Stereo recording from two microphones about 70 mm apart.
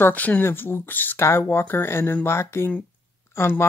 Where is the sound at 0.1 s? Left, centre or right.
Left.